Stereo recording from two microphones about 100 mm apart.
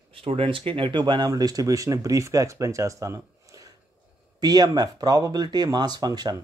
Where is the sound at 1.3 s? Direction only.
35° right (ahead or behind).